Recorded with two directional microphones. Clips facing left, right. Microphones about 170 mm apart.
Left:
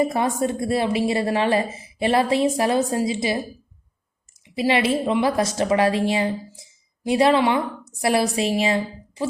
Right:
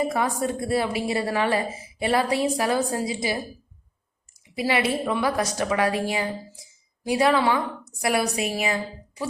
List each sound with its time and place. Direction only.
0.1 s a woman's voice: 25° left (ahead or behind)
4.5 s a woman's voice: 25° left (ahead or behind)